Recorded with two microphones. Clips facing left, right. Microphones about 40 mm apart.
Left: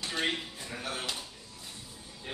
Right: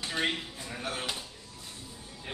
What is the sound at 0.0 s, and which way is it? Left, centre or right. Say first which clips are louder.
Speech: right 1 dB; centre.